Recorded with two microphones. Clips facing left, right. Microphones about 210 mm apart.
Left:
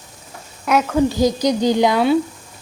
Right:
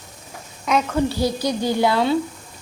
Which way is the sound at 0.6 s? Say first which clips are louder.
Left 4 dB; 5° left (ahead or behind).